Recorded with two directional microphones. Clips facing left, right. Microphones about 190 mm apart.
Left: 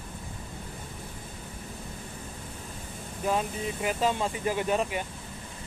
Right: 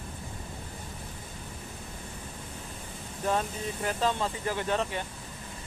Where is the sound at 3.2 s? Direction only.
10° left (ahead or behind).